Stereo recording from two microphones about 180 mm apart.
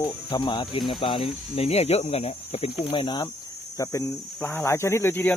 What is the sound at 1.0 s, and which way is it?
Cricket, 30° left (ahead or behind).